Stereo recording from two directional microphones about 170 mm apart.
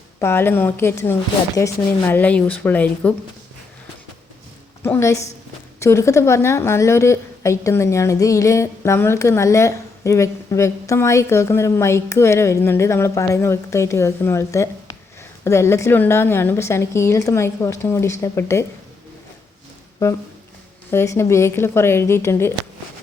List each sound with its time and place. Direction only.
0.2 s a woman's voice: 15° left (ahead or behind)
4.8 s a woman's voice: 15° left (ahead or behind)
20.0 s a woman's voice: 15° left (ahead or behind)